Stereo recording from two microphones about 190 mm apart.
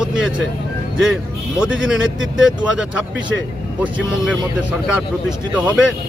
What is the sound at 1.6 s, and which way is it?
A man's voice, centre (ahead or behind).